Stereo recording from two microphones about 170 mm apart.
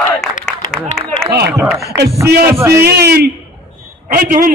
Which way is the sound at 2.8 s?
70° right (ahead or behind).